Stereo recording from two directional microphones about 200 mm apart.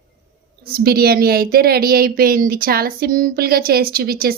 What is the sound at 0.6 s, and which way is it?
A woman's voice, 50° right (ahead or behind).